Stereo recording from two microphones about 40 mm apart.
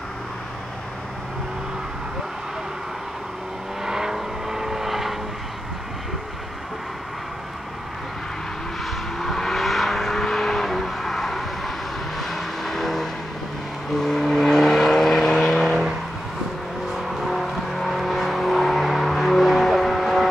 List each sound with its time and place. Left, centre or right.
3.8 s vehicle: centre
9.2 s vehicle: centre
15.6 s vehicle: centre
16.9 s vehicle: centre